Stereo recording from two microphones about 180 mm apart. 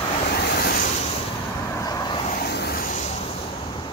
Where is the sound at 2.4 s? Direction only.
65° left (ahead or behind).